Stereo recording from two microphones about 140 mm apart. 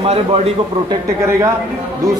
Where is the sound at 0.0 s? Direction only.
45° right (ahead or behind).